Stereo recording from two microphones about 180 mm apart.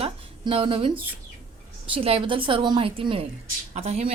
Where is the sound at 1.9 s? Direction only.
30° right (ahead or behind).